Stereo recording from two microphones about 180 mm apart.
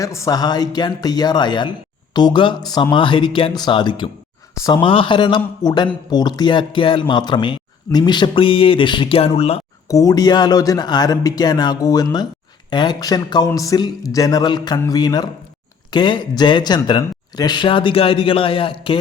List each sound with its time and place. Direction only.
0.0 s speech: 15° left (ahead or behind); by 9.6 s 35° left (ahead or behind)
9.9 s speech: 20° left (ahead or behind)